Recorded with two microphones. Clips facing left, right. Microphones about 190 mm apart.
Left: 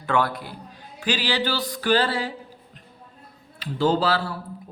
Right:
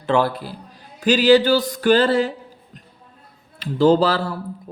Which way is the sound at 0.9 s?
45° right (ahead or behind).